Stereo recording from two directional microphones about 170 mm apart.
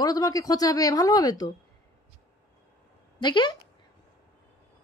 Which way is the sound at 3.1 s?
25° left (ahead or behind).